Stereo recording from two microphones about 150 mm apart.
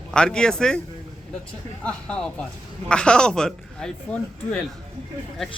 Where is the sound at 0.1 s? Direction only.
5° left (ahead or behind).